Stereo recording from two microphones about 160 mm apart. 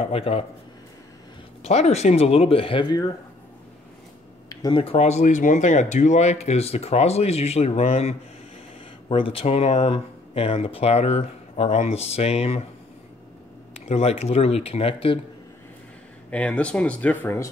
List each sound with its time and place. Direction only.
0.0 s speech: 35° left (ahead or behind)
1.6 s speech: 40° left (ahead or behind); by 3.1 s 25° left (ahead or behind)
4.5 s speech: 25° left (ahead or behind); by 12.6 s 40° left (ahead or behind)
13.7 s speech: 40° left (ahead or behind)
16.3 s speech: 10° left (ahead or behind)